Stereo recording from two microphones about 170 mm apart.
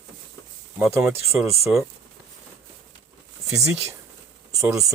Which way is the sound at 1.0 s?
15° right (ahead or behind).